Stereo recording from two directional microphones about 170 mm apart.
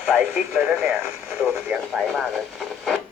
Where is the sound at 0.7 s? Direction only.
5° right (ahead or behind).